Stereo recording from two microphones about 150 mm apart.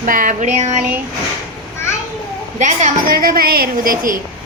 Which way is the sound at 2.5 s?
55° right (ahead or behind).